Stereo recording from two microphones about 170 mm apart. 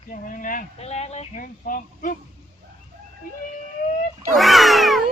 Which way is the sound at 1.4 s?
55° left (ahead or behind).